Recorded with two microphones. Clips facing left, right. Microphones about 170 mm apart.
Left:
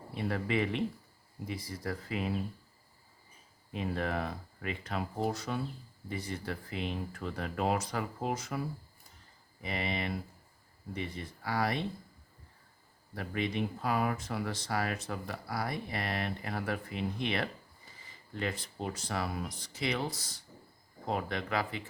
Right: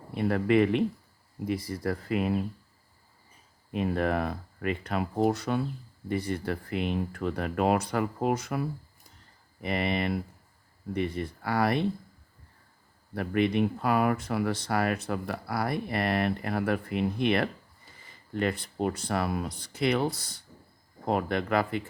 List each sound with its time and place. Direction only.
0.1 s speech: 55° right (ahead or behind)
3.7 s speech: 60° right (ahead or behind)
13.1 s speech: 60° right (ahead or behind)